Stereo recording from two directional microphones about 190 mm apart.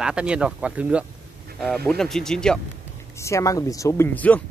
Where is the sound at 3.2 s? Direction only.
15° left (ahead or behind).